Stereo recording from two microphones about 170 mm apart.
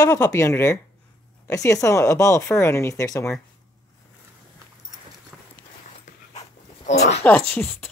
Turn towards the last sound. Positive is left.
turn(degrees=10)  # may be behind; listen again after turning